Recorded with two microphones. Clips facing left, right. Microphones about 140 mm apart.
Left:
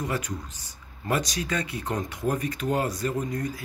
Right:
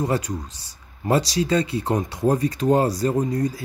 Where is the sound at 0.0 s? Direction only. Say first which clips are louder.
Right 7 dB; 35° right (ahead or behind).